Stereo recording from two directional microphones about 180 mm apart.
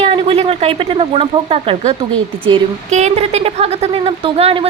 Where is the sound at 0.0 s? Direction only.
35° right (ahead or behind).